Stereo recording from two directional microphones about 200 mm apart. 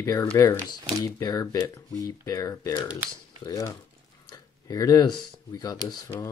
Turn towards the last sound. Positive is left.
turn(degrees=20)  # may be behind; listen again after turning